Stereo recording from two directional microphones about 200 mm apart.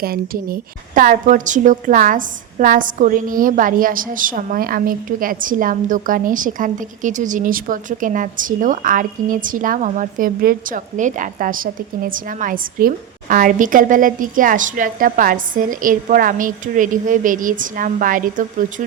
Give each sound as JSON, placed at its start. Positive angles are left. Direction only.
{"t": 0.0, "sound": "a woman's voice", "side_deg": -50}